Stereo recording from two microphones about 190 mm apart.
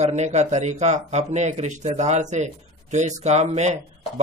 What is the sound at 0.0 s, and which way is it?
Speech, 40° right (ahead or behind).